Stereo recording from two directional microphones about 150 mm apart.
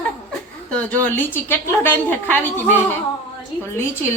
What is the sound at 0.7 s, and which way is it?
A woman's voice, 10° left (ahead or behind).